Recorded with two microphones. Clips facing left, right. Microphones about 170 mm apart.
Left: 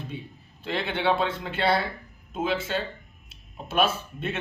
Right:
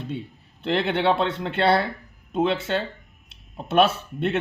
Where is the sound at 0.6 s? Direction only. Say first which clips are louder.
Right 5 dB; 70° right (ahead or behind).